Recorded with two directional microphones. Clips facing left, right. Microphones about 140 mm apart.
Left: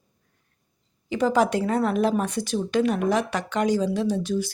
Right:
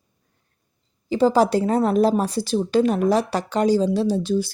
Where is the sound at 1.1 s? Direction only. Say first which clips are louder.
Right 4 dB; 30° right (ahead or behind).